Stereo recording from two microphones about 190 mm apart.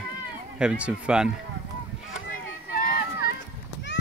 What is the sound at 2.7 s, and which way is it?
Run, 50° left (ahead or behind).